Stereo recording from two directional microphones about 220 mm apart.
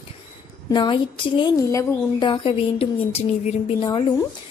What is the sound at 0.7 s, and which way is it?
Speech, 20° left (ahead or behind).